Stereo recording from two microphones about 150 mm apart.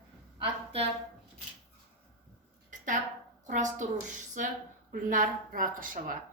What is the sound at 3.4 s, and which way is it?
A woman's voice, 55° right (ahead or behind).